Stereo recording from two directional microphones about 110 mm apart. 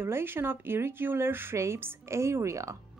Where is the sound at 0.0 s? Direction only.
20° right (ahead or behind).